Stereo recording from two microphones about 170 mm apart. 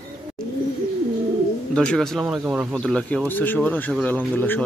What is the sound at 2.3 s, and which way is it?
Speech, 10° right (ahead or behind).